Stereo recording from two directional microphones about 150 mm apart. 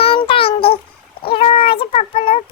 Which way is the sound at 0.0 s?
35° left (ahead or behind).